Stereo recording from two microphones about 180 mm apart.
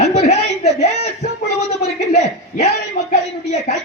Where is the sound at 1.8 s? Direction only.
40° left (ahead or behind).